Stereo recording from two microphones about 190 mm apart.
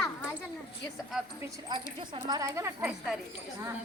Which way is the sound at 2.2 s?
20° right (ahead or behind).